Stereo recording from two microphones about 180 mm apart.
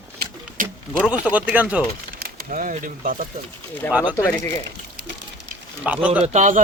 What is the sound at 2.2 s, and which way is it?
Speech, 55° right (ahead or behind).